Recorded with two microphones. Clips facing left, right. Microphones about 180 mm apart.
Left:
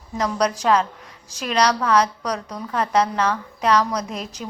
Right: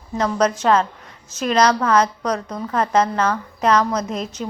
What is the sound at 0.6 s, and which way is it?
A woman's voice, centre (ahead or behind).